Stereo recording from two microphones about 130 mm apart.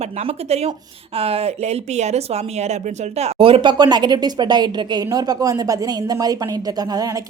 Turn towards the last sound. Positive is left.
turn(degrees=-30)  # may be behind; listen again after turning